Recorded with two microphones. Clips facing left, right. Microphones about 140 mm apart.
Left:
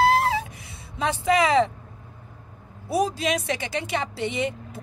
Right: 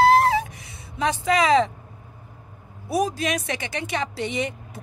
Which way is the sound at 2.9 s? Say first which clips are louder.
Even; 30° left (ahead or behind).